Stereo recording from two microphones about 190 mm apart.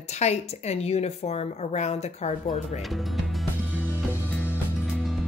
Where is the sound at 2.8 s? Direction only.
Centre (ahead or behind).